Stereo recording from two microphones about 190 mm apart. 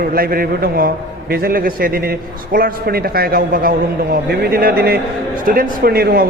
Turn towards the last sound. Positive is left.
turn(degrees=-55)  # may be behind; listen again after turning